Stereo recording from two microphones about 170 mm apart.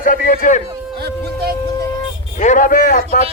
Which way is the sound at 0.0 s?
50° left (ahead or behind).